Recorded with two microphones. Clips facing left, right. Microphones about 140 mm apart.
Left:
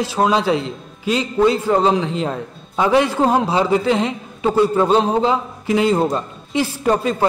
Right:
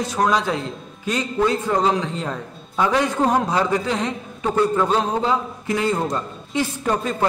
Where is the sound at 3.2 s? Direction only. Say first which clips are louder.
Left 3 dB; 25° left (ahead or behind).